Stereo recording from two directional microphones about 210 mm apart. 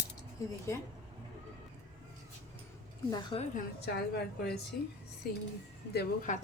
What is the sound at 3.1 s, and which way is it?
Speech, 20° left (ahead or behind).